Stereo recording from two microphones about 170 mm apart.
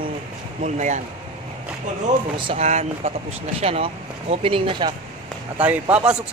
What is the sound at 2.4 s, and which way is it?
Speech, 35° right (ahead or behind).